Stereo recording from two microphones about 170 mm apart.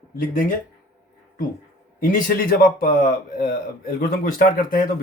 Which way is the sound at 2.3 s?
60° left (ahead or behind).